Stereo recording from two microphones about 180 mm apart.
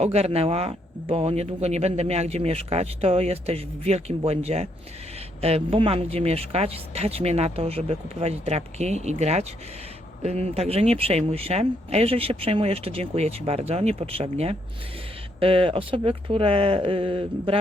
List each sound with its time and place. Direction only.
0.0 s speech: 35° right (ahead or behind)